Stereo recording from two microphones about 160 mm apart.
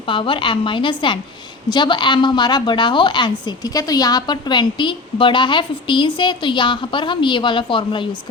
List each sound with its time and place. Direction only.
0.0 s a woman's voice: 30° left (ahead or behind)